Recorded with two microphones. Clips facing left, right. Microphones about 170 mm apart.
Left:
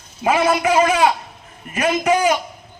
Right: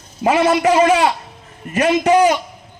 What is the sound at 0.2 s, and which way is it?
A man's voice, 45° right (ahead or behind).